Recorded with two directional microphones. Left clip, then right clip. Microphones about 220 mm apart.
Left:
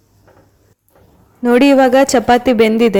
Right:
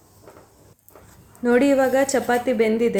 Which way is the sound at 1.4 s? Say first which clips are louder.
Left 8 dB; 40° left (ahead or behind).